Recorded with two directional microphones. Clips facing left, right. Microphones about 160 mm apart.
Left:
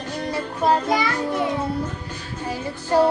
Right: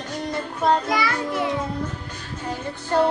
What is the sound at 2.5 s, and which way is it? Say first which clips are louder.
Music: left 3 dB; 10° left (ahead or behind).